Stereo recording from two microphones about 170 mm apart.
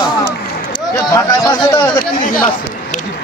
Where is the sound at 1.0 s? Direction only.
25° left (ahead or behind).